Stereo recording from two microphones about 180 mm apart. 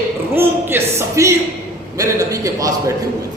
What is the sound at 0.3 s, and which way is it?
Speech, 15° right (ahead or behind).